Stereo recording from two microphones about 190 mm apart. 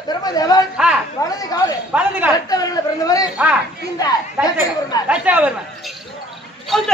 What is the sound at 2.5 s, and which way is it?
Speech, 20° left (ahead or behind).